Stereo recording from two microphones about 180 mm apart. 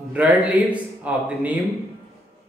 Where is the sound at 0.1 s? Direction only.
10° right (ahead or behind).